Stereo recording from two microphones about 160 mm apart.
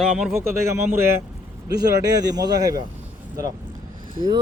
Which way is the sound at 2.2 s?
25° right (ahead or behind).